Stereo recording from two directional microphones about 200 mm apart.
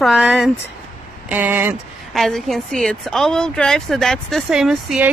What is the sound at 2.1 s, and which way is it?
A woman's voice, centre (ahead or behind).